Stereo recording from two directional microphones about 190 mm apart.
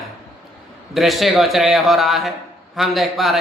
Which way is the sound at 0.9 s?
Centre (ahead or behind).